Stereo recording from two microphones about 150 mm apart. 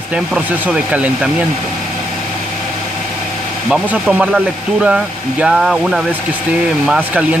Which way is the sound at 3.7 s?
10° right (ahead or behind).